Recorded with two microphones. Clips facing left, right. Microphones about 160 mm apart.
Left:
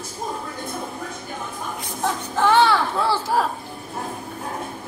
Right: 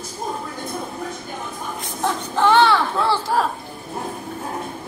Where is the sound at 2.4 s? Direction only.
10° left (ahead or behind).